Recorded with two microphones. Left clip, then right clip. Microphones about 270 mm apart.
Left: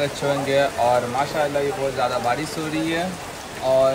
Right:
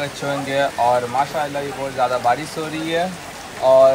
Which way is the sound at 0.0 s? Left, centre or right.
Centre.